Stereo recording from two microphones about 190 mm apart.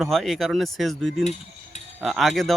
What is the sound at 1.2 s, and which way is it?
Cutlery, 40° left (ahead or behind).